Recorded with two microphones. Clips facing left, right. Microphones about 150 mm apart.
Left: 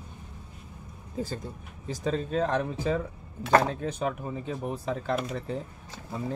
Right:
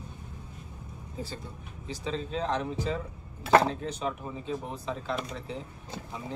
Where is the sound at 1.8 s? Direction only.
50° left (ahead or behind).